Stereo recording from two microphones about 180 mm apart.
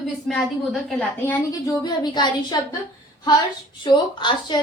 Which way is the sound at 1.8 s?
25° left (ahead or behind).